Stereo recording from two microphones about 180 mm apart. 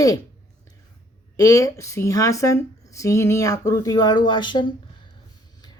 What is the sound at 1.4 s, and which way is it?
Speech, 20° left (ahead or behind).